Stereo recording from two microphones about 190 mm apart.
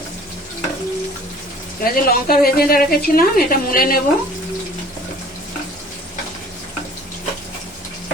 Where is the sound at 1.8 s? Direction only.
50° left (ahead or behind).